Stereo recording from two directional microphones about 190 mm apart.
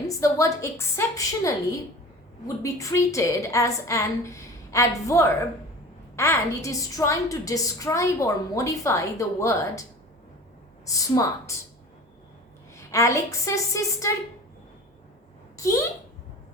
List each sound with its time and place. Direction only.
0.1 s a woman's voice: 15° left (ahead or behind)
10.8 s a woman's voice: 15° left (ahead or behind)
12.7 s a woman's voice: 15° left (ahead or behind)
15.5 s a woman's voice: 15° left (ahead or behind)